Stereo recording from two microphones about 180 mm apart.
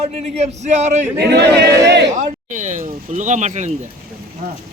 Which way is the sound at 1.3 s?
70° right (ahead or behind).